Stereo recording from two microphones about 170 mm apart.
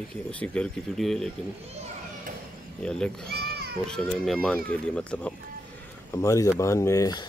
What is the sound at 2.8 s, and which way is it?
Speech, 5° left (ahead or behind).